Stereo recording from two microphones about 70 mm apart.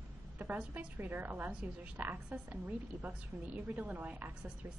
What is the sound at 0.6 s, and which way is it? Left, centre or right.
A woman's voice, right.